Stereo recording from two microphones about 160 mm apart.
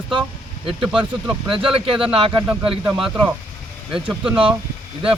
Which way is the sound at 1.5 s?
35° right (ahead or behind).